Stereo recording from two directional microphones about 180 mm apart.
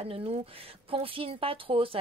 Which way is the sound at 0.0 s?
35° right (ahead or behind).